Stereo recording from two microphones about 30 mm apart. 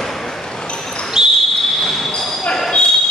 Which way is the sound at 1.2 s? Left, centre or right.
Right.